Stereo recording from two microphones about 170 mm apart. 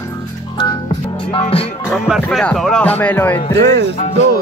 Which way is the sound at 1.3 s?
35° left (ahead or behind).